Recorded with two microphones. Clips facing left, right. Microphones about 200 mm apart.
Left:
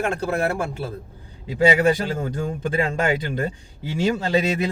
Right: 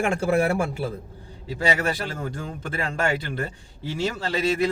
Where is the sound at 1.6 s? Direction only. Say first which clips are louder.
Left 7 dB; 15° left (ahead or behind).